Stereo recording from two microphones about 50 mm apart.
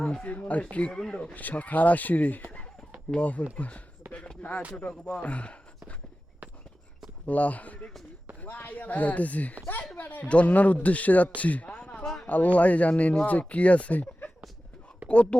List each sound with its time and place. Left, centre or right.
0.2 s speech: left
1.2 s speech: left
4.0 s a sound: right
4.4 s speech: left
7.3 s speech: left
11.3 s a sound: left
12.2 s speech: left